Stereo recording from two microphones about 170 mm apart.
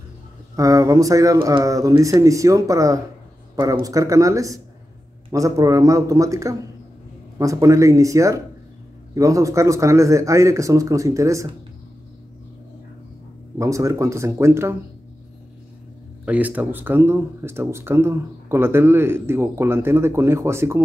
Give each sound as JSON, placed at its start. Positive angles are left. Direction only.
{"t": 0.6, "sound": "speech", "side_deg": -20}
{"t": 13.6, "sound": "speech", "side_deg": -20}
{"t": 16.3, "sound": "speech", "side_deg": -10}